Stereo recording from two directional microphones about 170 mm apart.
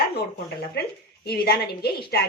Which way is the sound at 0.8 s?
75° left (ahead or behind).